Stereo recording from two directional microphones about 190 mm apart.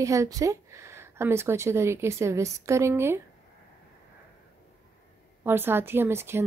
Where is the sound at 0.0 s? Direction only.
15° right (ahead or behind).